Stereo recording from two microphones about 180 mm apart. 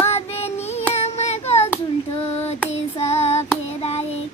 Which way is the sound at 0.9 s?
35° left (ahead or behind).